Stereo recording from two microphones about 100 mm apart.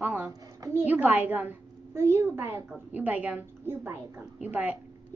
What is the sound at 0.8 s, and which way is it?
A woman's voice, 15° right (ahead or behind).